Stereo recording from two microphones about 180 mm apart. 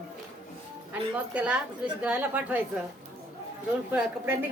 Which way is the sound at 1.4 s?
5° right (ahead or behind).